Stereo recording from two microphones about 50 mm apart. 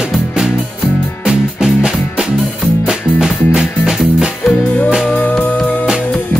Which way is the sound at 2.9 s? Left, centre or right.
Centre.